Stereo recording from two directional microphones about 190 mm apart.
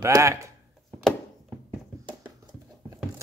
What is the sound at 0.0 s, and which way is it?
Speech, 15° right (ahead or behind).